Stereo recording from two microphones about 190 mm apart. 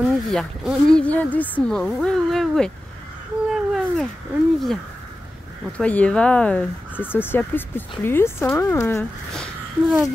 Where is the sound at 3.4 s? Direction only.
Centre (ahead or behind).